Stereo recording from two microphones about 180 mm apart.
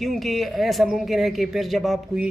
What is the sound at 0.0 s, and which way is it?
A woman's voice, centre (ahead or behind).